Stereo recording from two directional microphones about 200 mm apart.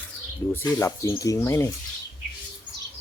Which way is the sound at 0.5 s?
15° left (ahead or behind).